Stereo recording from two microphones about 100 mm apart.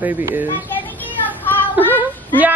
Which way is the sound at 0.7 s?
20° left (ahead or behind).